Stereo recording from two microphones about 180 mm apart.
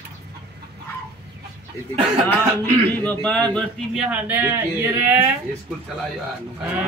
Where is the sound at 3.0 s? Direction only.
10° left (ahead or behind); by 5.3 s 10° right (ahead or behind).